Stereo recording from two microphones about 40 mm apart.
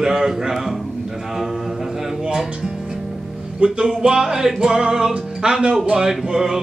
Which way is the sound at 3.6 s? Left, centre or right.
Right.